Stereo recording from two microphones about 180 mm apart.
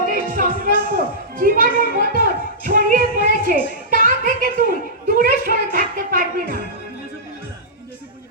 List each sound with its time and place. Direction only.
0.0 s music: 50° right (ahead or behind)